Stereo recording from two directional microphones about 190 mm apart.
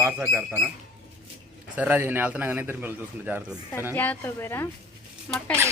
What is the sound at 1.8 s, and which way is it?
Speech, 10° right (ahead or behind).